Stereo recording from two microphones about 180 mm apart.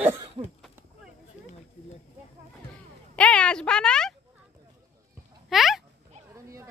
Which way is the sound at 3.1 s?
5° left (ahead or behind).